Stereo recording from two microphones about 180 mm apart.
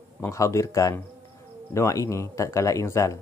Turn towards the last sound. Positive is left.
turn(degrees=15)  # may be behind; listen again after turning